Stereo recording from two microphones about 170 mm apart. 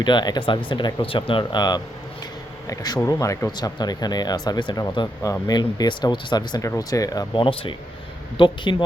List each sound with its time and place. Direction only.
0.0 s speech: 25° left (ahead or behind)